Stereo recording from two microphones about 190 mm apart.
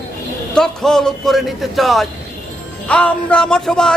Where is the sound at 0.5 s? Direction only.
5° left (ahead or behind).